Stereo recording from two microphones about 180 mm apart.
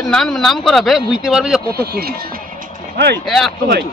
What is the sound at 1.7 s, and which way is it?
A man's voice, 60° right (ahead or behind).